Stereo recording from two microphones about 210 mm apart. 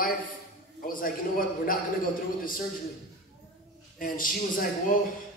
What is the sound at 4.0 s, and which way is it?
Speech, 40° left (ahead or behind).